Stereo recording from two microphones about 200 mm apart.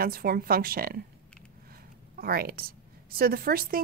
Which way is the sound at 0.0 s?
50° right (ahead or behind).